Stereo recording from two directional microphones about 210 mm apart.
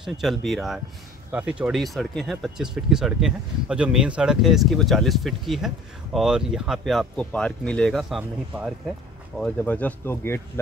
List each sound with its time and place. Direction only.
0.0 s speech: centre (ahead or behind)
9.4 s speech: 5° left (ahead or behind)